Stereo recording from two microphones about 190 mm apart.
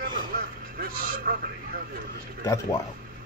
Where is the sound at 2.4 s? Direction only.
15° left (ahead or behind).